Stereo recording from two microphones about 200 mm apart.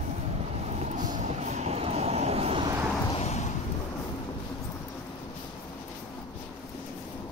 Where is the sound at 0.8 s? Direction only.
40° right (ahead or behind).